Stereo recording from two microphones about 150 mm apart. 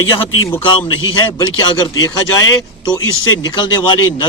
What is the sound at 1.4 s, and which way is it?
Speech, 25° left (ahead or behind).